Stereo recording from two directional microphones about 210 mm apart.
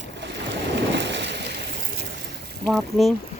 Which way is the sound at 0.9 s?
55° right (ahead or behind).